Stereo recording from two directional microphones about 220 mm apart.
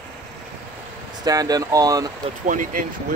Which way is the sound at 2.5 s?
35° right (ahead or behind).